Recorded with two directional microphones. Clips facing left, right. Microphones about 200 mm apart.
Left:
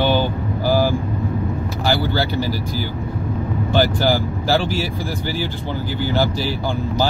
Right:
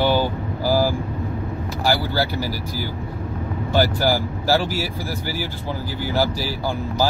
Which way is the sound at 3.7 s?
20° left (ahead or behind).